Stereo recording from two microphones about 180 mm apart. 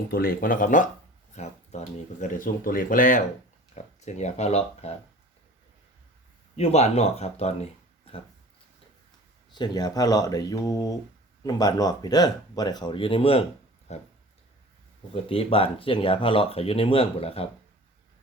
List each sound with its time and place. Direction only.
0.1 s speech: 55° left (ahead or behind)
2.2 s speech: 50° left (ahead or behind)
6.6 s speech: 35° left (ahead or behind)
9.5 s speech: 25° left (ahead or behind)
13.9 s a sound: 40° left (ahead or behind)
15.1 s speech: 30° left (ahead or behind)